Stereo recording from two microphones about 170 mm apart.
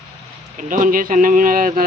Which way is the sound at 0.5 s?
50° right (ahead or behind).